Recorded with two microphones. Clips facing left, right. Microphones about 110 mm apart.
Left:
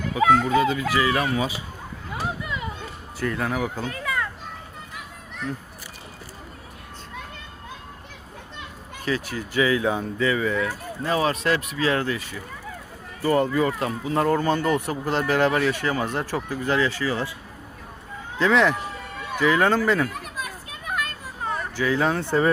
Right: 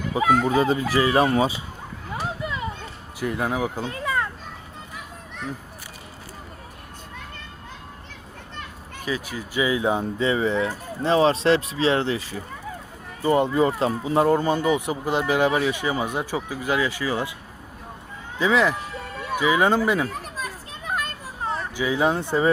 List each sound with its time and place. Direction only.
0.4 s speech: 30° right (ahead or behind)
3.2 s speech: 15° right (ahead or behind)
3.9 s children playing: 30° right (ahead or behind)
9.1 s speech: 10° right (ahead or behind); by 12.4 s 30° right (ahead or behind)
13.2 s speech: 20° right (ahead or behind)
18.3 s speech: 5° right (ahead or behind)
20.1 s children playing: 30° right (ahead or behind)
21.8 s speech: 15° right (ahead or behind)